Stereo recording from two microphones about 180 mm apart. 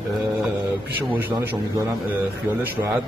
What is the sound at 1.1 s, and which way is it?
Speech, 10° right (ahead or behind).